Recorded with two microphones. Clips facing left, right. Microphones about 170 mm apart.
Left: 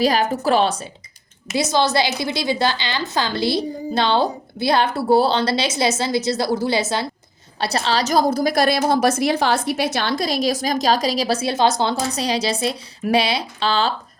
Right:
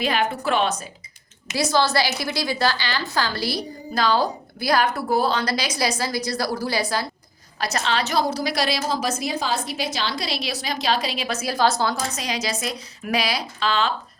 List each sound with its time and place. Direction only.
0.0 s a woman's voice: 40° left (ahead or behind)
1.5 s a woman's voice: 20° left (ahead or behind)